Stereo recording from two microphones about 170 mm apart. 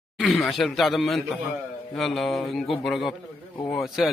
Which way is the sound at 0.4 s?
Centre (ahead or behind).